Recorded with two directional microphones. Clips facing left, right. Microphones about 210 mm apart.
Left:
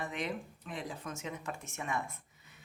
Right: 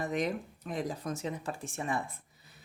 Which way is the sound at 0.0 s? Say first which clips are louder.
Right 6 dB; 40° right (ahead or behind).